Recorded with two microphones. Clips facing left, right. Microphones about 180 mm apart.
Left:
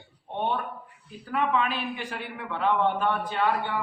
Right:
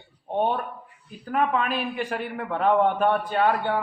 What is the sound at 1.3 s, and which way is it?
A man's voice, 45° right (ahead or behind).